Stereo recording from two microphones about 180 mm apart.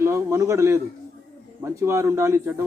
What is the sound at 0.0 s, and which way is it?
A man's voice, 15° right (ahead or behind).